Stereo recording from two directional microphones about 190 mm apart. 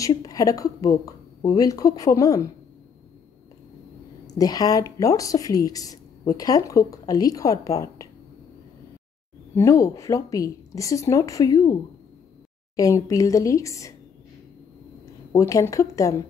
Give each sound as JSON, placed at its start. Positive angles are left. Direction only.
{"t": 0.0, "sound": "speech", "side_deg": 20}
{"t": 4.3, "sound": "speech", "side_deg": 20}
{"t": 9.6, "sound": "speech", "side_deg": 15}
{"t": 12.7, "sound": "speech", "side_deg": 15}
{"t": 15.3, "sound": "speech", "side_deg": 15}